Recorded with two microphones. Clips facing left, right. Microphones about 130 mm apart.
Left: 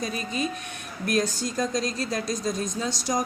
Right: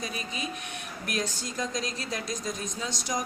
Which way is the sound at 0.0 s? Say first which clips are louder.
Left 6 dB; 40° left (ahead or behind).